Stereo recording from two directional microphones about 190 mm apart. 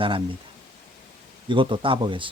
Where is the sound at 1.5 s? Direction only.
25° right (ahead or behind).